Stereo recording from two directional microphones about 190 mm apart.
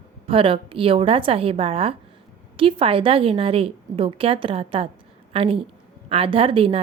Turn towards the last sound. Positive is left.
turn(degrees=-30)  # may be behind; listen again after turning